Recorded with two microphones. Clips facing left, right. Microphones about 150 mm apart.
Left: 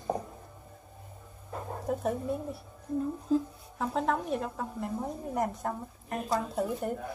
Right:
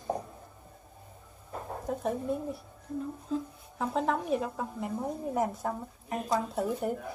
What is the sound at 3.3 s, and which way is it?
Speech, 35° left (ahead or behind).